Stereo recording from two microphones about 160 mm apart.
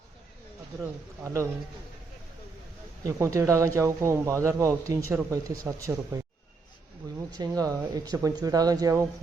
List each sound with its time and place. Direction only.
0.8 s speech: 20° right (ahead or behind)
3.1 s speech: 20° right (ahead or behind)
7.3 s speech: 25° right (ahead or behind)